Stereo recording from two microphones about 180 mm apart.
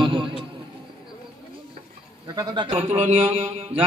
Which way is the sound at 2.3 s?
25° right (ahead or behind).